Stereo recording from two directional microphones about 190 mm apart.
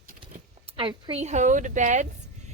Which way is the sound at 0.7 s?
30° right (ahead or behind).